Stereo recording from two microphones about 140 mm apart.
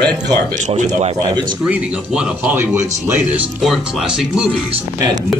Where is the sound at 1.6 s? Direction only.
5° right (ahead or behind).